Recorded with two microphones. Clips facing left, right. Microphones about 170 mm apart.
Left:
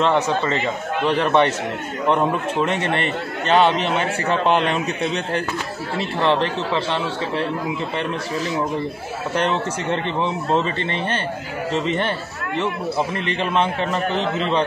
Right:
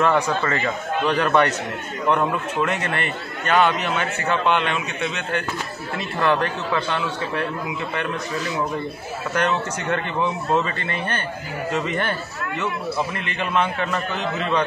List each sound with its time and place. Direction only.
0.0 s a man's voice: 25° left (ahead or behind)
9.3 s a man's voice: 30° left (ahead or behind)
13.4 s a man's voice: 30° left (ahead or behind)